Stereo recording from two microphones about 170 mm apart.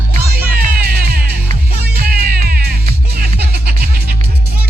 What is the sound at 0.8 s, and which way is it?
Music, 60° right (ahead or behind).